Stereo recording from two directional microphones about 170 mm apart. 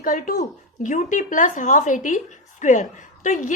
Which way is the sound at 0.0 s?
50° left (ahead or behind).